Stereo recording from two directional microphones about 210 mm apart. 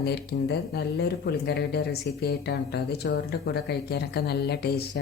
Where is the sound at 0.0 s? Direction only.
50° left (ahead or behind).